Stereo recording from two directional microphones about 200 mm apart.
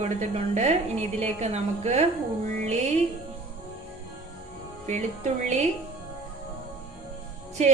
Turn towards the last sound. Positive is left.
turn(degrees=-35)  # may be behind; listen again after turning